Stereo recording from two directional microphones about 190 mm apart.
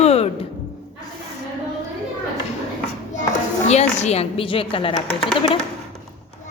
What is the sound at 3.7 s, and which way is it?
A woman's voice, 35° left (ahead or behind).